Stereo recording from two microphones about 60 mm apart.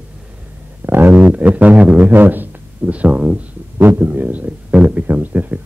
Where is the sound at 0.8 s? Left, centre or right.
Right.